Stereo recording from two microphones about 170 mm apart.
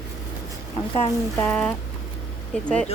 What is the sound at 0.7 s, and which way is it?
Speech, 30° left (ahead or behind).